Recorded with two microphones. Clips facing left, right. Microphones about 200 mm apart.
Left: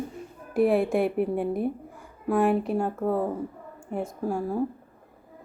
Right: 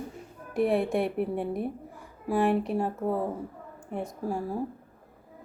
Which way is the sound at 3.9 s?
Centre (ahead or behind).